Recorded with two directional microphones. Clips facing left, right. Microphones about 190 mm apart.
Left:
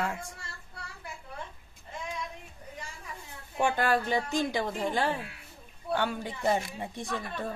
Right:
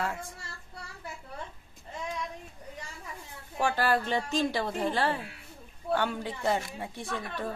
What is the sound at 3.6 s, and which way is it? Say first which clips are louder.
Speech: even; 20° left (ahead or behind).